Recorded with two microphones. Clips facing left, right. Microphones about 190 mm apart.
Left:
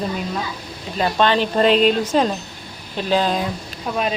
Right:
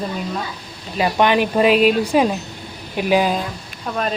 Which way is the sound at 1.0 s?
15° right (ahead or behind).